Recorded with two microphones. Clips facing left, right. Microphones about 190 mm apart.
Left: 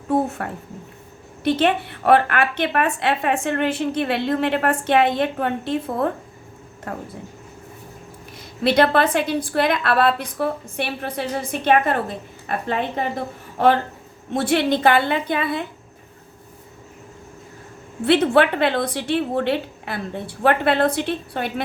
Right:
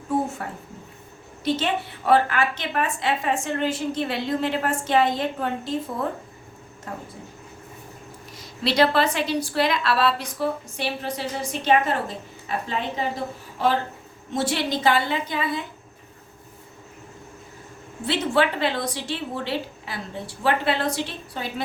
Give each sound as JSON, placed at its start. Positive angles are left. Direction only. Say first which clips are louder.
{"t": 0.4, "sound": "a woman's voice", "louder": "left 4 dB", "side_deg": 60}
{"t": 8.6, "sound": "a woman's voice", "louder": "left 3 dB", "side_deg": 55}
{"t": 18.0, "sound": "a woman's voice", "louder": "left 6 dB", "side_deg": 60}